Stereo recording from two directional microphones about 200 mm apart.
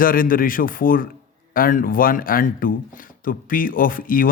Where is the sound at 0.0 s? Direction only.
45° left (ahead or behind).